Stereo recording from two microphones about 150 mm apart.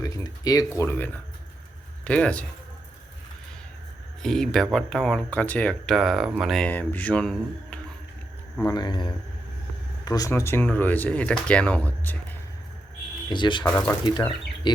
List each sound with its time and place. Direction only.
0.0 s speech: 25° left (ahead or behind); by 2.5 s 10° left (ahead or behind)
4.2 s speech: 5° left (ahead or behind)
6.7 s speech: 10° left (ahead or behind)
8.6 s speech: 30° left (ahead or behind); by 12.1 s 10° left (ahead or behind)
13.3 s speech: 30° left (ahead or behind)
13.7 s speech: 10° left (ahead or behind)
14.0 s speech: 30° left (ahead or behind)